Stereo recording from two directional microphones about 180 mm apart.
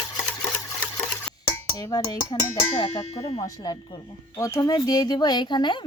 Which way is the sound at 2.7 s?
35° left (ahead or behind).